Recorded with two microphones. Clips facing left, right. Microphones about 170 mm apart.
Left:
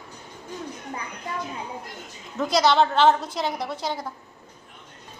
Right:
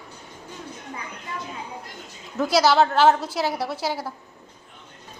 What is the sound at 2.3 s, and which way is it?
A woman's voice, 5° right (ahead or behind).